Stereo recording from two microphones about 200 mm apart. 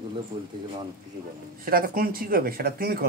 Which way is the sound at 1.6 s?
45° right (ahead or behind).